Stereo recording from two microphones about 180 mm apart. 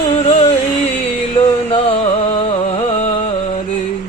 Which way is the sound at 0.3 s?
35° left (ahead or behind).